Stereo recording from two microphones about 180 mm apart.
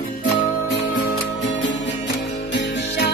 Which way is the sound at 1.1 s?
90° left.